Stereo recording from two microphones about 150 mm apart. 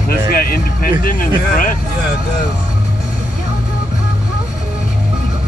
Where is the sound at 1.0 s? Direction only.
65° left (ahead or behind).